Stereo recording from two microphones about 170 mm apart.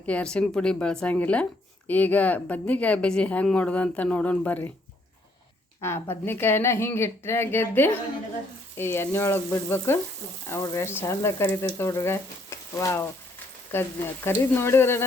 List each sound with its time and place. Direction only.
0.0 s speech: 5° left (ahead or behind)
5.8 s speech: 15° left (ahead or behind)
14.3 s speech: 15° left (ahead or behind)